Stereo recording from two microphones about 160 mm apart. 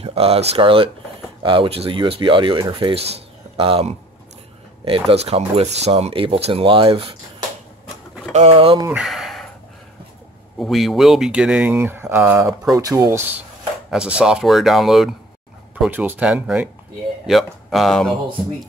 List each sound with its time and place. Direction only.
0.0 s speech: 40° right (ahead or behind)
8.3 s speech: 40° right (ahead or behind)
8.9 s a sound: centre (ahead or behind)
10.6 s speech: centre (ahead or behind); by 13.4 s 20° right (ahead or behind)
13.8 s speech: 5° right (ahead or behind)